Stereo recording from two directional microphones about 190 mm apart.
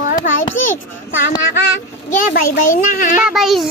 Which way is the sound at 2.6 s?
45° left (ahead or behind).